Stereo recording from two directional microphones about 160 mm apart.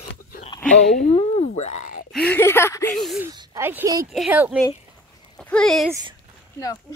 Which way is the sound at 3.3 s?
25° right (ahead or behind).